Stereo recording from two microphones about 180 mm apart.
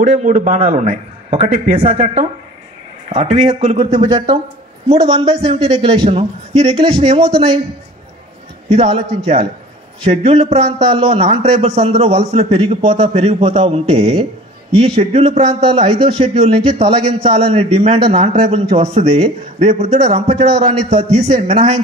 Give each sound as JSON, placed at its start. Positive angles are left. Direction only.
{"t": 0.2, "sound": "a man's voice", "side_deg": -40}
{"t": 3.1, "sound": "a man's voice", "side_deg": -30}
{"t": 4.0, "sound": "speech", "side_deg": -20}
{"t": 4.8, "sound": "a man's voice", "side_deg": -35}
{"t": 8.6, "sound": "a man's voice", "side_deg": -35}